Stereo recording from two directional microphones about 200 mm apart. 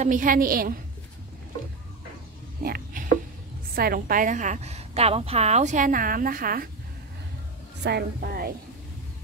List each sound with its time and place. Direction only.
0.0 s speech: 40° right (ahead or behind)
2.6 s a sound: 45° right (ahead or behind)
3.7 s a woman's voice: 50° right (ahead or behind)
7.8 s speech: 55° right (ahead or behind)